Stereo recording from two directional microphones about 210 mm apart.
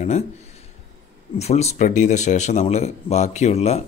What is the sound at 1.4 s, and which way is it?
Speech, 30° left (ahead or behind).